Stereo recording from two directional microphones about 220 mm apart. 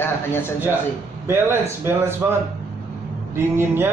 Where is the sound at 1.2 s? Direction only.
10° right (ahead or behind).